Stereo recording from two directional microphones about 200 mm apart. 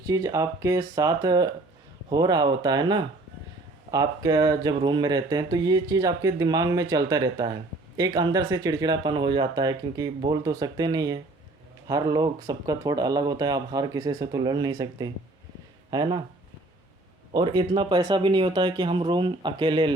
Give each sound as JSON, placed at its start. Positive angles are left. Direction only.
{"t": 0.1, "sound": "speech", "side_deg": -15}
{"t": 17.3, "sound": "speech", "side_deg": -20}